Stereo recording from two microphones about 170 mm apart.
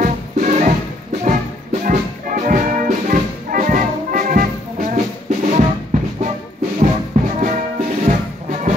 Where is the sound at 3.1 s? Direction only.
55° right (ahead or behind).